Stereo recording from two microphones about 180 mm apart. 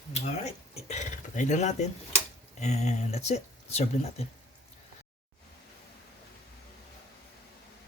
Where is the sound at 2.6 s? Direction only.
40° left (ahead or behind).